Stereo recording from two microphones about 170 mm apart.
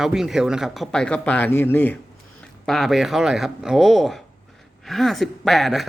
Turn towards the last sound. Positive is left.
turn(degrees=0)  # may be behind; listen again after turning